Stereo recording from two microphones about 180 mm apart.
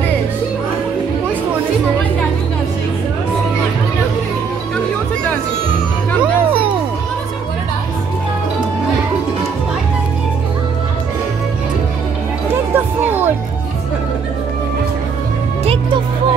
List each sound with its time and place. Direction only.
12.7 s music: 10° right (ahead or behind)
15.6 s music: 30° right (ahead or behind)